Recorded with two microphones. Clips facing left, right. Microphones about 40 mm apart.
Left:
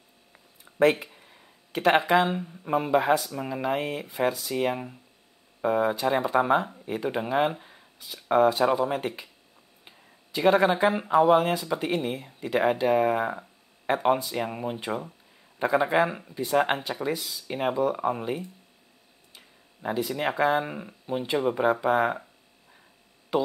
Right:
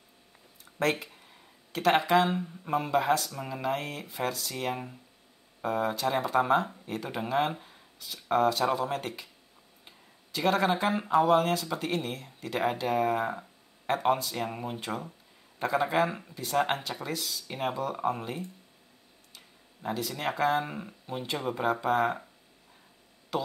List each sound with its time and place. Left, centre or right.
0.7 s a sound: centre
1.7 s speech: centre
23.3 s speech: centre